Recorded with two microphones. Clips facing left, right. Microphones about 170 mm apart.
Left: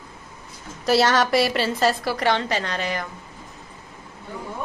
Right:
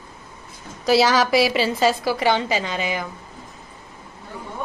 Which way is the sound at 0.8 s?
Centre (ahead or behind).